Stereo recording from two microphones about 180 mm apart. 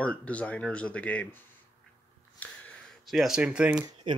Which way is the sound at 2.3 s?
5° left (ahead or behind).